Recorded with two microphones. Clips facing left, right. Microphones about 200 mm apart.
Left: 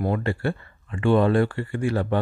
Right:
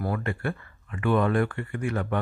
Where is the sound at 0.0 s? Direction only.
25° left (ahead or behind).